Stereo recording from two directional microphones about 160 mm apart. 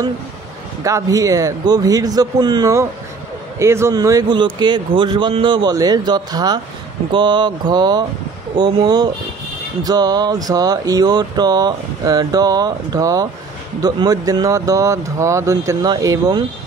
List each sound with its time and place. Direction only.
0.8 s speech: 20° right (ahead or behind)